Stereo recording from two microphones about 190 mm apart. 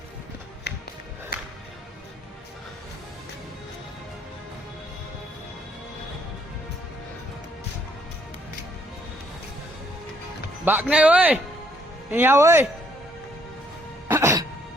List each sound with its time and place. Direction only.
0.7 s music: 60° left (ahead or behind)
10.7 s speech: 10° right (ahead or behind)
14.1 s music: 15° right (ahead or behind)